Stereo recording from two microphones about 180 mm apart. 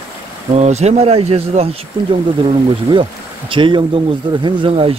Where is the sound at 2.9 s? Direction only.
25° right (ahead or behind).